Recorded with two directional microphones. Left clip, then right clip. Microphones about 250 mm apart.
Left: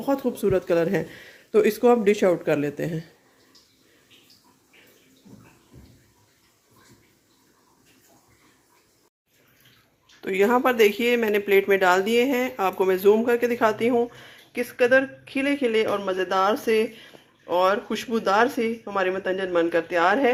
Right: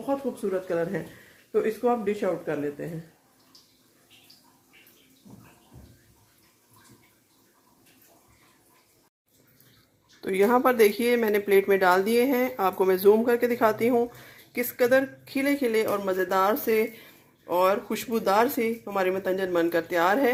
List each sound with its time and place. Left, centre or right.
0.0 s speech: left
10.2 s speech: centre